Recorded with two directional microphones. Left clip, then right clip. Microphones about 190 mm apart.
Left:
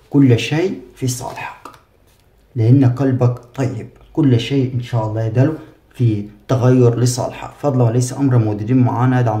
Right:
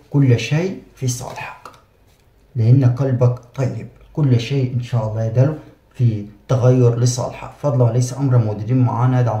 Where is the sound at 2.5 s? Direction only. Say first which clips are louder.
Left 5 dB; 45° left (ahead or behind).